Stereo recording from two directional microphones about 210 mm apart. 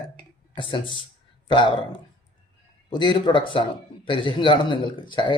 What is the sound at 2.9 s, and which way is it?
Speech, 20° left (ahead or behind).